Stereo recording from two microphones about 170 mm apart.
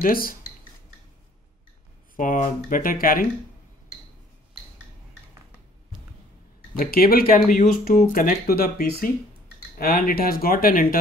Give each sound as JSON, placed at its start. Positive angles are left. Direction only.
{"t": 0.0, "sound": "speech", "side_deg": 60}
{"t": 2.1, "sound": "speech", "side_deg": 55}
{"t": 6.8, "sound": "speech", "side_deg": 60}